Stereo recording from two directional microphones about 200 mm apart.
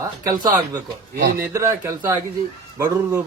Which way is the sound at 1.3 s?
15° right (ahead or behind).